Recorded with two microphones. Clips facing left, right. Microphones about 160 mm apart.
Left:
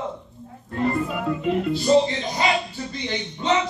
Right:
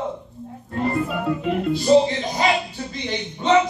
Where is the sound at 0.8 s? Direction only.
5° right (ahead or behind).